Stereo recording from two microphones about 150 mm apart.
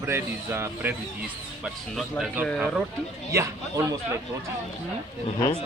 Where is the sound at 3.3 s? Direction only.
20° right (ahead or behind).